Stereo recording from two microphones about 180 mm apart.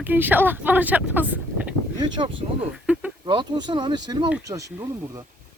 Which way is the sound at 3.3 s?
25° right (ahead or behind).